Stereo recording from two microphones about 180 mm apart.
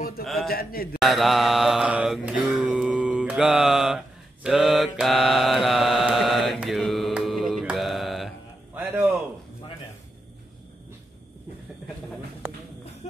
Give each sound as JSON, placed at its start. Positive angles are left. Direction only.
{"t": 0.2, "sound": "speech", "side_deg": 0}
{"t": 0.5, "sound": "a man's voice", "side_deg": 55}
{"t": 1.0, "sound": "mantra", "side_deg": 0}
{"t": 8.7, "sound": "a sound", "side_deg": -10}